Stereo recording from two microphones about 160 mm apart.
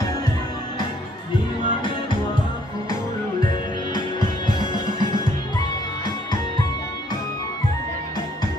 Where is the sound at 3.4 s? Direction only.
30° left (ahead or behind).